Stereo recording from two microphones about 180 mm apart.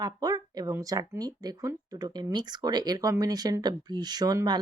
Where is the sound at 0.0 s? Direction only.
20° right (ahead or behind).